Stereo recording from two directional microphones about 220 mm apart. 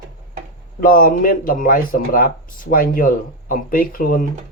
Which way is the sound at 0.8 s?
40° left (ahead or behind).